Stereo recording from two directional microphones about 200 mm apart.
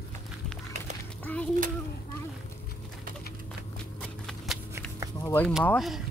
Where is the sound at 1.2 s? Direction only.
5° left (ahead or behind).